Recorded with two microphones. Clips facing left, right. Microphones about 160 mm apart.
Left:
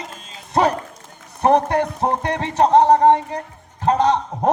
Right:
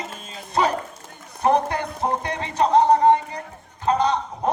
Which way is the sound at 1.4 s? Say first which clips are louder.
Left 4 dB; 65° left (ahead or behind).